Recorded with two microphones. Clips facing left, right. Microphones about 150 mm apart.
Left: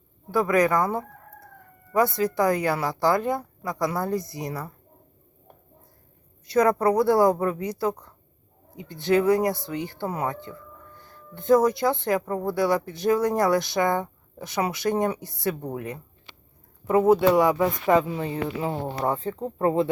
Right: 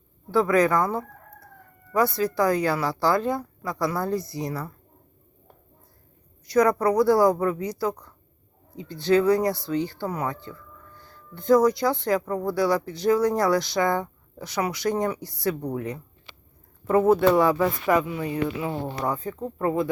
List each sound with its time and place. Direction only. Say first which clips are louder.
0.3 s speech: right 1 dB; 15° left (ahead or behind)
6.5 s speech: even; 25° left (ahead or behind)